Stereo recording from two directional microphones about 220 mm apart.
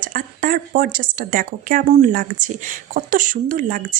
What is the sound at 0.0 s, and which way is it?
Speech, 40° right (ahead or behind).